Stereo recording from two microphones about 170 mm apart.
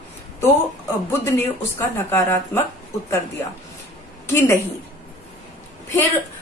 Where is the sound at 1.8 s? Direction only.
15° left (ahead or behind).